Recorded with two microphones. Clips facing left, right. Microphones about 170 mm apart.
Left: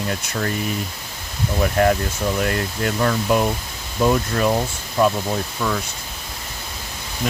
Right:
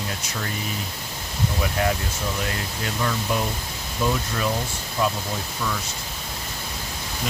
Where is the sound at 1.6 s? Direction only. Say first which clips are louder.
Left 8 dB; 50° left (ahead or behind).